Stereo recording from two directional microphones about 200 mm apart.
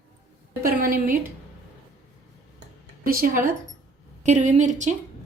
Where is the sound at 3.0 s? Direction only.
45° right (ahead or behind).